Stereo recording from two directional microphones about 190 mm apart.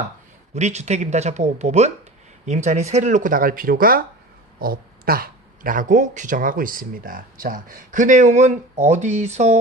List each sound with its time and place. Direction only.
0.5 s speech: 35° right (ahead or behind)